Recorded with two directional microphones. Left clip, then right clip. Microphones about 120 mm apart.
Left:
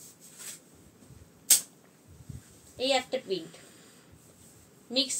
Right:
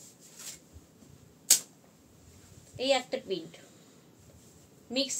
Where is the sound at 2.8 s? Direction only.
Centre (ahead or behind).